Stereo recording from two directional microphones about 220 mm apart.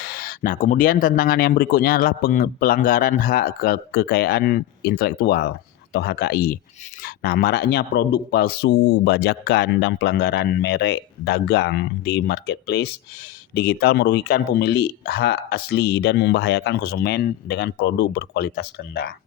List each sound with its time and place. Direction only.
0.0 s speech: 40° left (ahead or behind)